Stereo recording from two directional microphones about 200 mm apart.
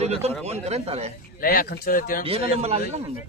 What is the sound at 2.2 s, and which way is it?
Speech, 30° right (ahead or behind).